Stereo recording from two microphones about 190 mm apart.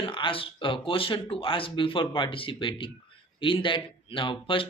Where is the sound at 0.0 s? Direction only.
25° left (ahead or behind).